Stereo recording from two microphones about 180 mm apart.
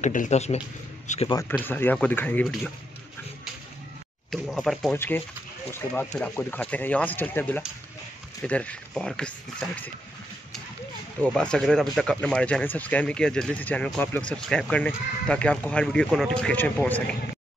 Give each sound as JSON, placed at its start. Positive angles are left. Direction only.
{"t": 0.0, "sound": "a man's voice", "side_deg": 45}
{"t": 1.6, "sound": "speech", "side_deg": 10}
{"t": 4.3, "sound": "speech", "side_deg": 0}
{"t": 4.9, "sound": "speech", "side_deg": 10}
{"t": 11.3, "sound": "speech", "side_deg": 5}